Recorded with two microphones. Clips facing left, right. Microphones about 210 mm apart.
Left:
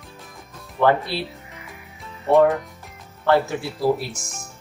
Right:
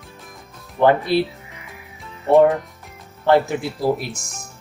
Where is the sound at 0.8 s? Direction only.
20° right (ahead or behind).